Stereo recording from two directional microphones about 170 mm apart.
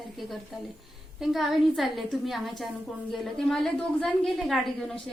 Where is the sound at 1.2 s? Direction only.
Centre (ahead or behind).